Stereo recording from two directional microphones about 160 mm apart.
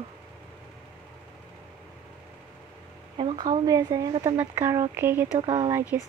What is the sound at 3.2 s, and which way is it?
Speech, 30° right (ahead or behind).